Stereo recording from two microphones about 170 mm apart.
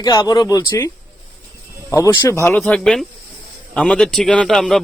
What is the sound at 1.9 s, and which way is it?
Speech, 15° left (ahead or behind).